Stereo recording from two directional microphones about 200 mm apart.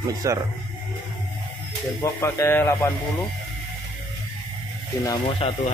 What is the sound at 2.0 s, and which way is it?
Speech, 15° left (ahead or behind).